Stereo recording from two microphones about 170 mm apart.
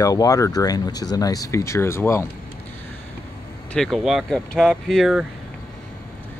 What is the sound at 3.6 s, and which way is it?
Speech, 5° left (ahead or behind).